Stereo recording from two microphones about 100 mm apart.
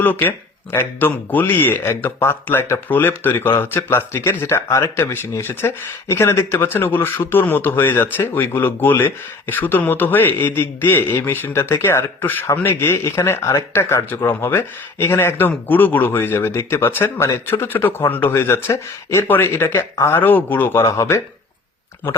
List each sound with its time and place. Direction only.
0.0 s speech: 20° left (ahead or behind)